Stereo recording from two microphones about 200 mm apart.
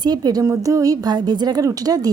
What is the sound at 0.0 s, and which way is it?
A woman's voice, 20° right (ahead or behind).